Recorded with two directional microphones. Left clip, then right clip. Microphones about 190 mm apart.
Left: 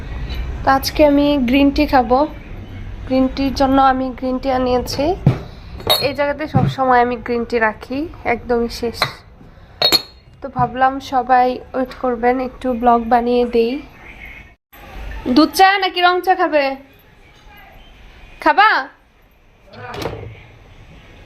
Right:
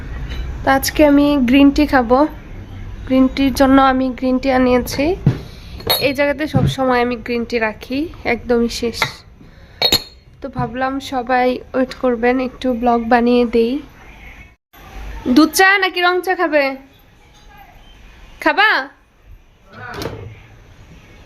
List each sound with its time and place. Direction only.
0.9 s a woman's voice: 30° right (ahead or behind)
10.4 s a woman's voice: 20° right (ahead or behind)
15.3 s a woman's voice: 20° right (ahead or behind)
18.3 s a woman's voice: 20° right (ahead or behind)